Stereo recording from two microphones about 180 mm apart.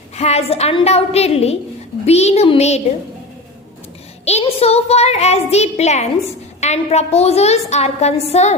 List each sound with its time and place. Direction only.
0.2 s a woman's voice: 35° left (ahead or behind)
4.3 s a woman's voice: 35° left (ahead or behind)